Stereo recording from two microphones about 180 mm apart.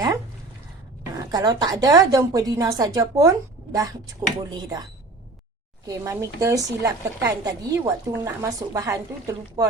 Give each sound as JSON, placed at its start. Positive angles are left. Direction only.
{"t": 1.1, "sound": "a woman's voice", "side_deg": -20}